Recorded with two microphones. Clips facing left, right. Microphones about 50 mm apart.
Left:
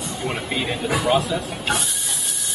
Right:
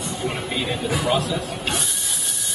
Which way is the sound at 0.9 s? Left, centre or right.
Centre.